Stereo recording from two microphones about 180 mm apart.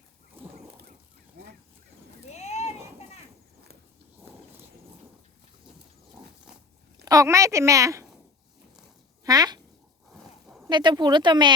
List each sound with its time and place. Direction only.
2.2 s clip-clop: 35° left (ahead or behind)
7.0 s speech: 20° right (ahead or behind)
9.2 s a child's voice: 20° right (ahead or behind)
10.1 s dog: 5° right (ahead or behind)
10.7 s speech: 25° right (ahead or behind)